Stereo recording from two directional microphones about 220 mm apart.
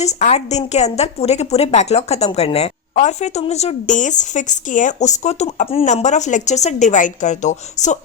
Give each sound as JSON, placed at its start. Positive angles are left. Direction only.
{"t": 0.0, "sound": "a woman's voice", "side_deg": 30}